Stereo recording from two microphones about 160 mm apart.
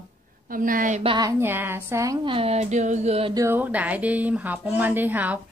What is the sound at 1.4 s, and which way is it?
Speech, 15° right (ahead or behind).